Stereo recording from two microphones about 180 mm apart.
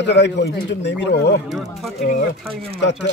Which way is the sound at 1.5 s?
Centre (ahead or behind).